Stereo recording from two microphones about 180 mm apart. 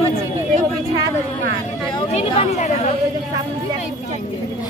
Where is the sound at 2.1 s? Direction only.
40° left (ahead or behind).